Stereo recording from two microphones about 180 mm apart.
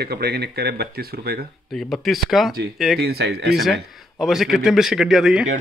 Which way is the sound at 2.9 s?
65° right (ahead or behind).